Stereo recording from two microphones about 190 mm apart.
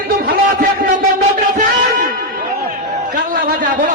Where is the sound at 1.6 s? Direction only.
50° right (ahead or behind).